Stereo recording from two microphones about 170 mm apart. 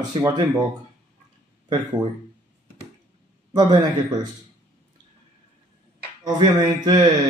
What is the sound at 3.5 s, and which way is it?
Speech, 25° right (ahead or behind).